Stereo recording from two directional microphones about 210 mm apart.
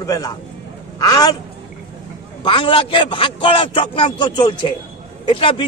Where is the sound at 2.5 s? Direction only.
25° left (ahead or behind).